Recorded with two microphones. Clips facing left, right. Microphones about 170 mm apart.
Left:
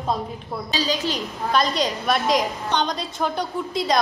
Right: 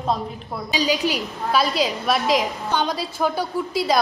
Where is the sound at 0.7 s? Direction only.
15° right (ahead or behind).